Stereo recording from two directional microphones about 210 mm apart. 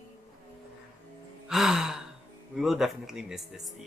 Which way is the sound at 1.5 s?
Centre (ahead or behind).